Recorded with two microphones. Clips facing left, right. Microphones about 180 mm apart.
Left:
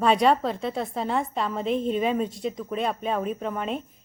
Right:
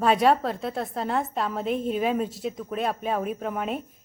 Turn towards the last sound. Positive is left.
turn(degrees=-5)  # may be behind; listen again after turning